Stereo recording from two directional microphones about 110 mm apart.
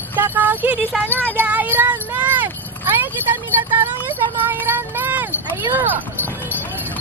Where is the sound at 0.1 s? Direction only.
20° right (ahead or behind).